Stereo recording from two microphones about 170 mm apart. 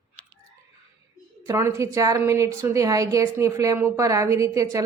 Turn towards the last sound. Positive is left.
turn(degrees=-20)  # may be behind; listen again after turning